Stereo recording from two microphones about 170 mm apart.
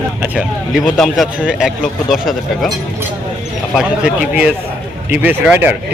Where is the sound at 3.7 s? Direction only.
5° right (ahead or behind).